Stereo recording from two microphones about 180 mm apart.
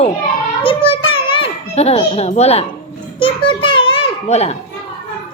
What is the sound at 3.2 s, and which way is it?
A child's voice, 30° left (ahead or behind).